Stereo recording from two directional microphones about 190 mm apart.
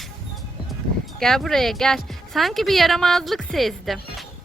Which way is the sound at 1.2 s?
Centre (ahead or behind).